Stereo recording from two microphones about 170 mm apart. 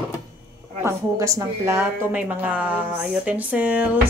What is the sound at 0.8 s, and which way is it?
A woman's voice, 20° right (ahead or behind).